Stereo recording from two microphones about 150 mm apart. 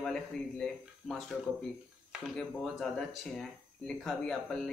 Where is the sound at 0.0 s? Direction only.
5° left (ahead or behind).